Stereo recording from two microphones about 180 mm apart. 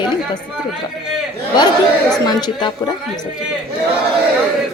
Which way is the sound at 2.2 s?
25° left (ahead or behind).